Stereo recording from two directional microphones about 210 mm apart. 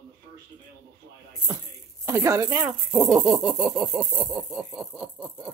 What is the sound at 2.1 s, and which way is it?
Speech, 15° right (ahead or behind).